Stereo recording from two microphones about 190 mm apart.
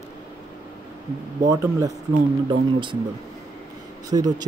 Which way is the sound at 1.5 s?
15° right (ahead or behind).